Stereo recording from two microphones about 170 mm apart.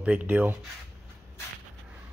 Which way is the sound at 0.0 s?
10° right (ahead or behind).